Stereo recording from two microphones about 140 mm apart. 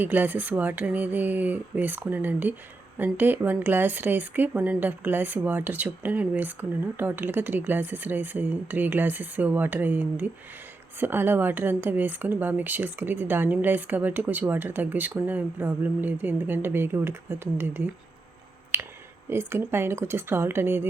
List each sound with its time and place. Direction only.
0.0 s speech: 15° right (ahead or behind)